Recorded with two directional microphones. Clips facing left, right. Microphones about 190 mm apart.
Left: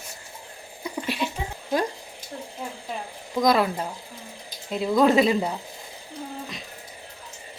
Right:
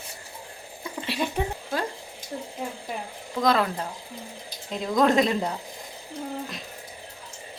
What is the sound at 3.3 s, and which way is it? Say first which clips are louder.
A woman's voice: left 2 dB; 10° left (ahead or behind).